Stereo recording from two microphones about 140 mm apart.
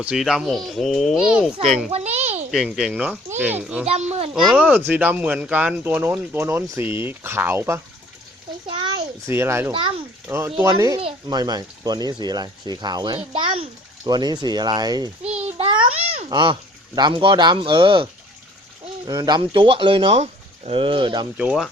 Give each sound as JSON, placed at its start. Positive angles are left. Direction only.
{"t": 0.0, "sound": "speech", "side_deg": -5}
{"t": 1.9, "sound": "a sound", "side_deg": -50}
{"t": 2.5, "sound": "speech", "side_deg": -5}
{"t": 3.8, "sound": "children playing", "side_deg": -50}
{"t": 4.5, "sound": "speech", "side_deg": -10}
{"t": 8.6, "sound": "a sound", "side_deg": -35}
{"t": 9.2, "sound": "speech", "side_deg": -20}
{"t": 15.3, "sound": "a sound", "side_deg": -50}
{"t": 16.3, "sound": "speech", "side_deg": -35}
{"t": 21.3, "sound": "speech", "side_deg": -5}